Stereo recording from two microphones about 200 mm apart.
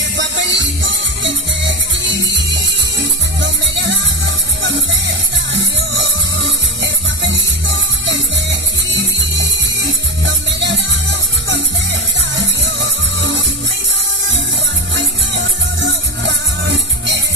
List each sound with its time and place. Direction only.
0.2 s music: 65° right (ahead or behind)
3.3 s music: 65° right (ahead or behind)
15.0 s music: 65° right (ahead or behind)